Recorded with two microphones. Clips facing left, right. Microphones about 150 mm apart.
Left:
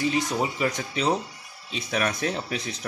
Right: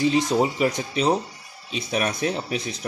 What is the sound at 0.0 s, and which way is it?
Speech, 25° right (ahead or behind).